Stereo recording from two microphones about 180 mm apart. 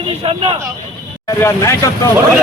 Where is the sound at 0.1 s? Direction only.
30° right (ahead or behind).